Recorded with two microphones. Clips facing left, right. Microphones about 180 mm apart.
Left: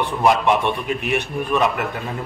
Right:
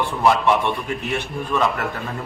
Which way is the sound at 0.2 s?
15° left (ahead or behind).